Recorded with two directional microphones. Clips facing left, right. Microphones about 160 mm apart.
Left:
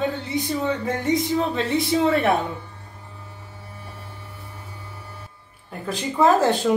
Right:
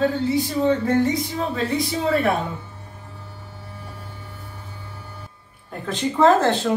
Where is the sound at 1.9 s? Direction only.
20° left (ahead or behind).